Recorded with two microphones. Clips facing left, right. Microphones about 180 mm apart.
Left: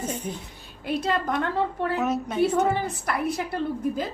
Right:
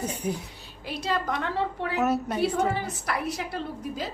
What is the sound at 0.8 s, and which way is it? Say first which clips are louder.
Speech: left 3 dB; 55° left (ahead or behind).